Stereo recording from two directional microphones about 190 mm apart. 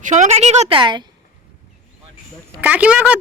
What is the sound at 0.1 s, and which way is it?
Speech, 35° right (ahead or behind).